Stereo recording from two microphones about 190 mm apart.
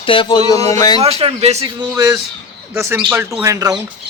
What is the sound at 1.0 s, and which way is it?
Speech, 30° right (ahead or behind).